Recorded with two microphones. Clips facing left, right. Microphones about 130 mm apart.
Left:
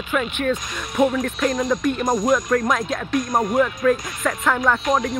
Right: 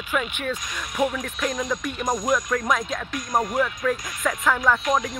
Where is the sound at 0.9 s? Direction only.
30° left (ahead or behind).